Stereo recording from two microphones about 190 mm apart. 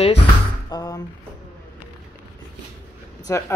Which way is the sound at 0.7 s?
15° left (ahead or behind).